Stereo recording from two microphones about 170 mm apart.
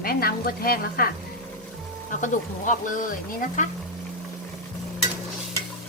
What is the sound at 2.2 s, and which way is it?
Speech, 50° left (ahead or behind).